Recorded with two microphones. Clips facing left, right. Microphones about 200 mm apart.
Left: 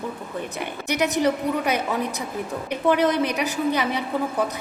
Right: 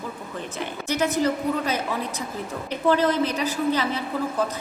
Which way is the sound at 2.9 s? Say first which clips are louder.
Left 1 dB; 15° left (ahead or behind).